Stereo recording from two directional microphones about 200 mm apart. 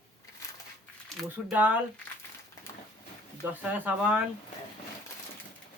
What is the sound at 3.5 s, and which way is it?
Speech, 10° right (ahead or behind).